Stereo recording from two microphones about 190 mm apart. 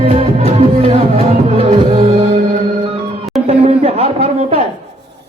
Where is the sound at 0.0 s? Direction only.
30° right (ahead or behind).